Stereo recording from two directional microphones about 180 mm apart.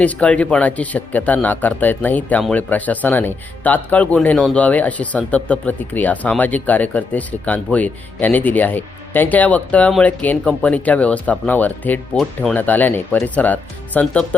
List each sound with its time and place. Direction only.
0.0 s speech: 5° left (ahead or behind)